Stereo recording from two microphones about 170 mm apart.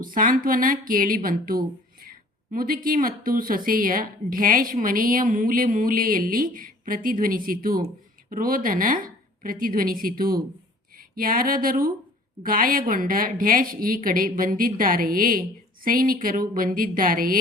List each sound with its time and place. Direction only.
0.0 s a woman's voice: 55° right (ahead or behind)